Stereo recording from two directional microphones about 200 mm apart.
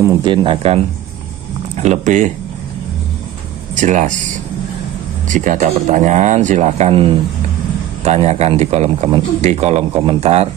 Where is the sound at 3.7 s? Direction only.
40° right (ahead or behind).